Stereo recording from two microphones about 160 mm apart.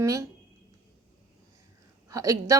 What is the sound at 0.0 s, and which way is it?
Speech, 20° right (ahead or behind).